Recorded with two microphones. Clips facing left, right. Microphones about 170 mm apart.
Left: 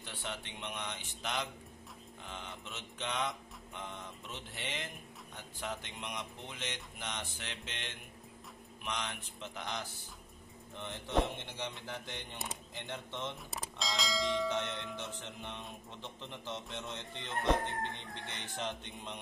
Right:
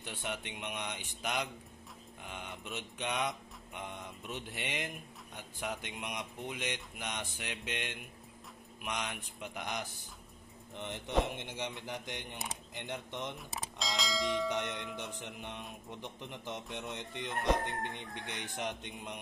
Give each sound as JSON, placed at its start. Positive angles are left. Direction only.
{"t": 0.0, "sound": "mantra", "side_deg": -15}
{"t": 2.6, "sound": "mantra", "side_deg": -15}
{"t": 13.5, "sound": "bell", "side_deg": 0}
{"t": 14.5, "sound": "mantra", "side_deg": -15}
{"t": 17.6, "sound": "mantra", "side_deg": -15}